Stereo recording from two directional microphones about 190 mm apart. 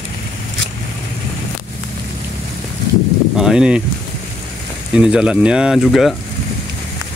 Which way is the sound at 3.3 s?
5° right (ahead or behind).